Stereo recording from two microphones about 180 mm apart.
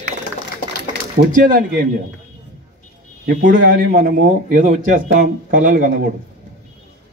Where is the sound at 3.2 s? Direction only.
55° right (ahead or behind).